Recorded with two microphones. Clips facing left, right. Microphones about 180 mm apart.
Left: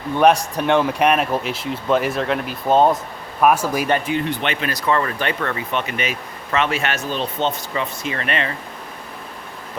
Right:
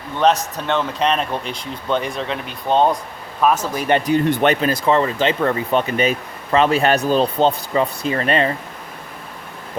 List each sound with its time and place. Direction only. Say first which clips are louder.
0.2 s speech: left 2 dB; 10° left (ahead or behind)
4.0 s speech: right 6 dB; 40° right (ahead or behind)
4.6 s speech: right 4 dB; 25° right (ahead or behind)
5.5 s speech: right 6 dB; 35° right (ahead or behind)